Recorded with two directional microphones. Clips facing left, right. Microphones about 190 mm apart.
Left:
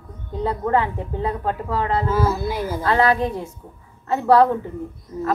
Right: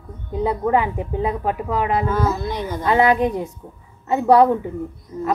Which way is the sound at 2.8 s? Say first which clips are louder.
Right 3 dB; 15° right (ahead or behind).